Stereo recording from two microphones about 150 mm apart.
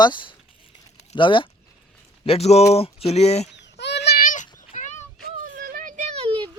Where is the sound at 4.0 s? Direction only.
85° left; by 4.9 s 55° left (ahead or behind).